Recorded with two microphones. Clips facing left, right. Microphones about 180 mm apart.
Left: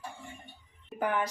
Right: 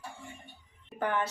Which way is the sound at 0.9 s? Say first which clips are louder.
Left 1 dB; 10° left (ahead or behind).